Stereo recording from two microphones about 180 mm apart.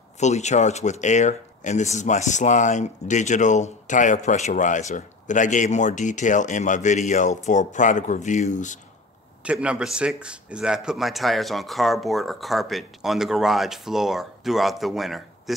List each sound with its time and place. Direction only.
0.2 s speech: 40° left (ahead or behind)
9.4 s speech: 5° right (ahead or behind)